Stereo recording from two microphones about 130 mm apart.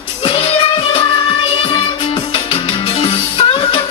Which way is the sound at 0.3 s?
40° left (ahead or behind).